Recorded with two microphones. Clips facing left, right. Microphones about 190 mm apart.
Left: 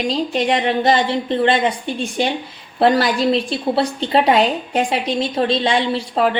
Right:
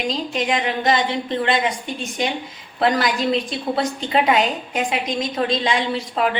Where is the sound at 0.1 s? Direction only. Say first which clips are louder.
Left 5 dB; 35° left (ahead or behind).